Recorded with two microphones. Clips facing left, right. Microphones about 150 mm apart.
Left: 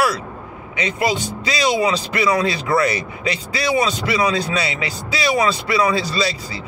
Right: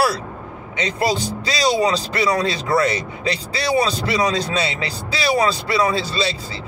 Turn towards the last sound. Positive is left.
turn(degrees=-30)  # may be behind; listen again after turning